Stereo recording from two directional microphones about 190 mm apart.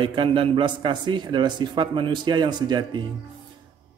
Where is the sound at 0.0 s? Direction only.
25° right (ahead or behind).